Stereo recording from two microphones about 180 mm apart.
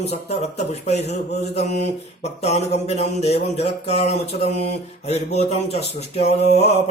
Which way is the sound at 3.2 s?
35° left (ahead or behind).